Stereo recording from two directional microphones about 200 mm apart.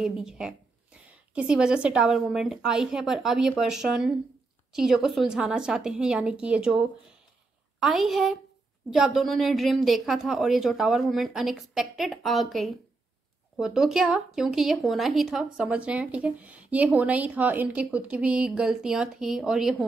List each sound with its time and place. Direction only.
0.0 s speech: 5° right (ahead or behind)